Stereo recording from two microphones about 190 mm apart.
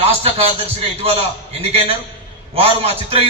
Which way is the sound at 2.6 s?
30° right (ahead or behind).